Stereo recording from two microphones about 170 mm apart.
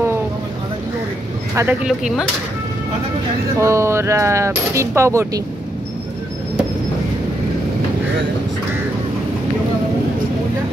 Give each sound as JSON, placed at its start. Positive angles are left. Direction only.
{"t": 1.5, "sound": "speech", "side_deg": -15}
{"t": 1.9, "sound": "speech", "side_deg": -5}
{"t": 3.5, "sound": "speech", "side_deg": -15}